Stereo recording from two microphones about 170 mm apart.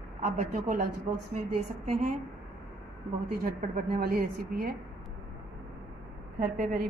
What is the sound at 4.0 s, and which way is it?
Speech, 60° right (ahead or behind).